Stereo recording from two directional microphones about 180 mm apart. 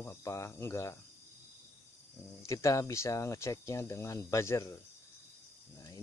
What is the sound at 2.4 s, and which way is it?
Speech, 15° left (ahead or behind).